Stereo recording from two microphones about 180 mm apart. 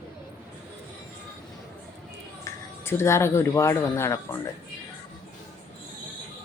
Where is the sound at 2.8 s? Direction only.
15° left (ahead or behind).